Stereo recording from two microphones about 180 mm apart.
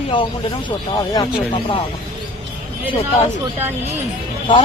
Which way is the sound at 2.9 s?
30° left (ahead or behind).